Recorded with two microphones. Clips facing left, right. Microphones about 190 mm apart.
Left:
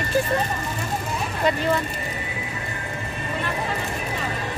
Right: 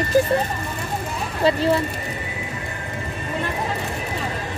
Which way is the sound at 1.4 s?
30° right (ahead or behind).